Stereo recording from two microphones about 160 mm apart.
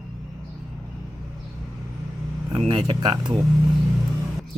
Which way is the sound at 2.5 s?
35° right (ahead or behind).